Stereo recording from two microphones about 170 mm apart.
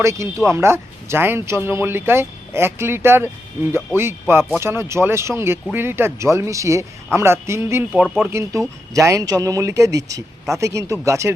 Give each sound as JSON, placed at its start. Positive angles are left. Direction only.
{"t": 0.0, "sound": "speech", "side_deg": -15}